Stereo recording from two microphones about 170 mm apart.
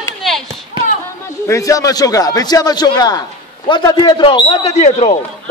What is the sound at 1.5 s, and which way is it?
A man's voice, 20° left (ahead or behind).